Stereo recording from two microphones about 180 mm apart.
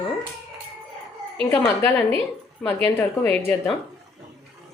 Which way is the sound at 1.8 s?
10° left (ahead or behind).